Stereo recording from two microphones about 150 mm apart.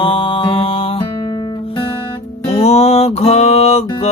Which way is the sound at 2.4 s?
45° left (ahead or behind).